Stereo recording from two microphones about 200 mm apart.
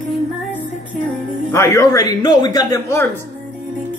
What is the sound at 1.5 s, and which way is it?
Speech, 15° left (ahead or behind).